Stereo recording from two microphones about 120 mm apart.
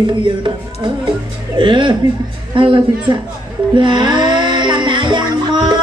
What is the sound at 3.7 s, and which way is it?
Music, 40° right (ahead or behind).